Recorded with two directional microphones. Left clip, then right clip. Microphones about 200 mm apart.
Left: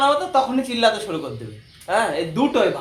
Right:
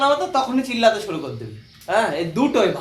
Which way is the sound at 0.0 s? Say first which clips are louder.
Left 1 dB; 5° left (ahead or behind).